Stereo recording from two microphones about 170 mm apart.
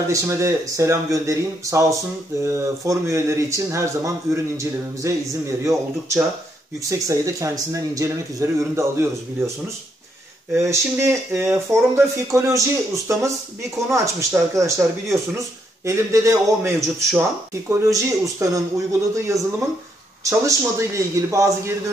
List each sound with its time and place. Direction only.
0.1 s speech: 15° right (ahead or behind)
10.5 s speech: 15° right (ahead or behind)